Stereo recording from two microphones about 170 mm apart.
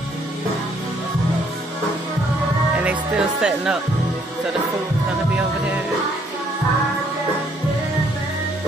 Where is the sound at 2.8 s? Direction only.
5° right (ahead or behind).